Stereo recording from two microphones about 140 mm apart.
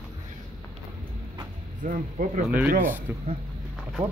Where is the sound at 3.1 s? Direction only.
15° right (ahead or behind).